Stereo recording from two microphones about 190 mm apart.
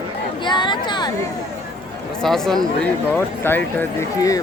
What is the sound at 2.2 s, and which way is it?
Speech, centre (ahead or behind).